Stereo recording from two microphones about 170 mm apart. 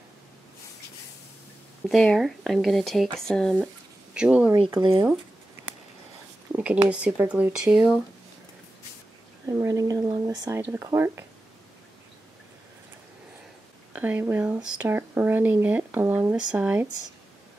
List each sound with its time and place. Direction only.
1.9 s speech: centre (ahead or behind)
6.5 s speech: 5° right (ahead or behind)
9.5 s speech: 20° right (ahead or behind)
13.9 s speech: 10° right (ahead or behind)